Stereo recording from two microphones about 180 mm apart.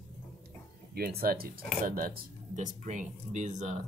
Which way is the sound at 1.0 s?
60° right (ahead or behind).